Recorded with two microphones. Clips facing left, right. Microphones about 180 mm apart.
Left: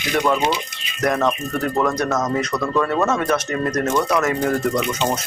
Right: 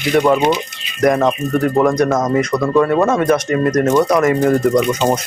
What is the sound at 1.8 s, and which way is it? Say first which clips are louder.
Speech: right 6 dB; 10° right (ahead or behind).